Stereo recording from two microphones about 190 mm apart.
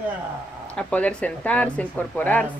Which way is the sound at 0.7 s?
5° left (ahead or behind).